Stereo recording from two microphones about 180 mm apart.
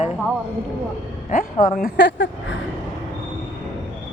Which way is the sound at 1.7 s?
65° left (ahead or behind).